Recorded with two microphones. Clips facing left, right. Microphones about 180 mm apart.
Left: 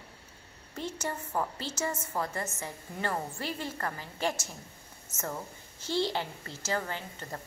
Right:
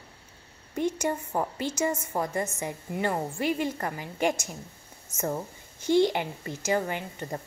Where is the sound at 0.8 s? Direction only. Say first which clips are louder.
Right 8 dB; 15° right (ahead or behind).